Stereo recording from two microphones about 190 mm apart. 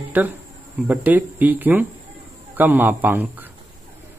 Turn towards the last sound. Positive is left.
turn(degrees=-10)  # may be behind; listen again after turning